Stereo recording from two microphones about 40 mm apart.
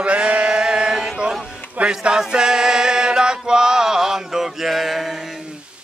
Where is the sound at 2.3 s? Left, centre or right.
Centre.